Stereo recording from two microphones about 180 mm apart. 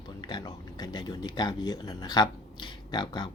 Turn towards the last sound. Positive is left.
turn(degrees=25)  # may be behind; listen again after turning